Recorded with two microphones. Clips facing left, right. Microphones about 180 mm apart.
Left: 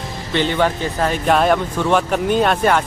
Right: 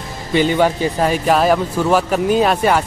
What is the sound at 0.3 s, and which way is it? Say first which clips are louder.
Speech: right 3 dB; 10° right (ahead or behind).